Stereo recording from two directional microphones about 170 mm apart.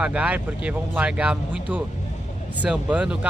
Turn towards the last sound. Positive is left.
turn(degrees=-5)  # may be behind; listen again after turning